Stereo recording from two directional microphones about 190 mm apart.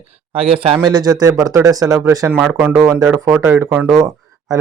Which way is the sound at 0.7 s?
20° right (ahead or behind).